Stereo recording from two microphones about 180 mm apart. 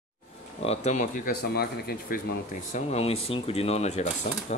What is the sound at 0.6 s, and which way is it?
Speech, 35° left (ahead or behind).